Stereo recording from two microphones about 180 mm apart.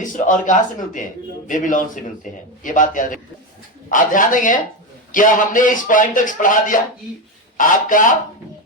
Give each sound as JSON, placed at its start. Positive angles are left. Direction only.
{"t": 0.0, "sound": "speech", "side_deg": 45}